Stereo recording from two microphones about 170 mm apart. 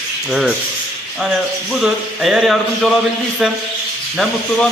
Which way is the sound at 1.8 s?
Centre (ahead or behind).